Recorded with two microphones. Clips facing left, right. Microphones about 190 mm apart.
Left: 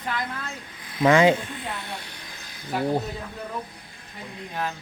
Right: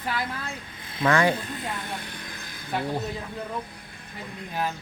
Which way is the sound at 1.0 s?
20° left (ahead or behind).